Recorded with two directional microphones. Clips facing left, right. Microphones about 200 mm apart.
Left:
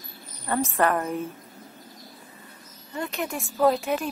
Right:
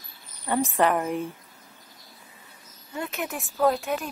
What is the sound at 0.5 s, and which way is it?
Speech, 15° right (ahead or behind).